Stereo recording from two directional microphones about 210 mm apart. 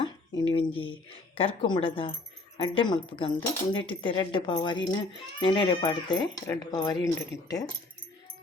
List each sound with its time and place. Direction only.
0.5 s speech: 25° left (ahead or behind)